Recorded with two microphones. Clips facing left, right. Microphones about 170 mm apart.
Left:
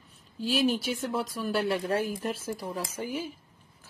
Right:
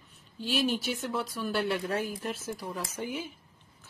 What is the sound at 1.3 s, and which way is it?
Speech, 40° left (ahead or behind).